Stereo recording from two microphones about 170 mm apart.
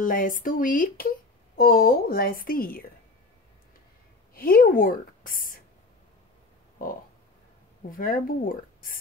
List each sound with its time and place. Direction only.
0.0 s speech: 55° left (ahead or behind)
4.3 s a woman's voice: 60° left (ahead or behind)
6.8 s a sound: 55° left (ahead or behind)
7.9 s speech: 55° left (ahead or behind)